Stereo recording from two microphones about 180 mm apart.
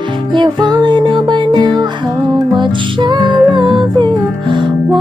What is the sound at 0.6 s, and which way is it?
Music, 25° right (ahead or behind).